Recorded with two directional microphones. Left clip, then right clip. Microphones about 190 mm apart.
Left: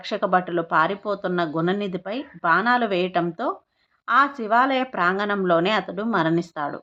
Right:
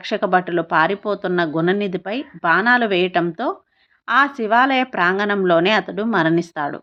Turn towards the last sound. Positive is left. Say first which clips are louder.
# right 4 dB
turn(degrees=-10)  # may be behind; listen again after turning